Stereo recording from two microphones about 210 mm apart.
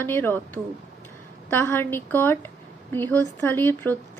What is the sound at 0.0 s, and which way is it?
A woman's voice, 10° left (ahead or behind).